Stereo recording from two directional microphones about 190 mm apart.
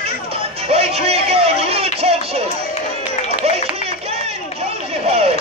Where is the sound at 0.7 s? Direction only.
30° right (ahead or behind).